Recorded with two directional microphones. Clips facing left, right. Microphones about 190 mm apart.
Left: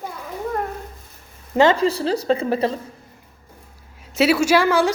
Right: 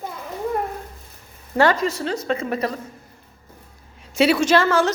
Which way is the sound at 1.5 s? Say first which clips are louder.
Left 3 dB; 20° left (ahead or behind).